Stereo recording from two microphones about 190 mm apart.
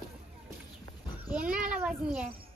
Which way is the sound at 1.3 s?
5° right (ahead or behind).